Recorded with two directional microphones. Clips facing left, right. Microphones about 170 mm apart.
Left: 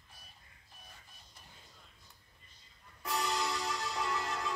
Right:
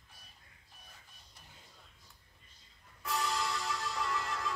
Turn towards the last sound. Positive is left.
turn(degrees=20)  # may be behind; listen again after turning